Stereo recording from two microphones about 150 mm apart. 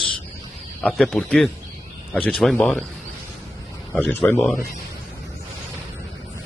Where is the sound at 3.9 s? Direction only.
10° left (ahead or behind).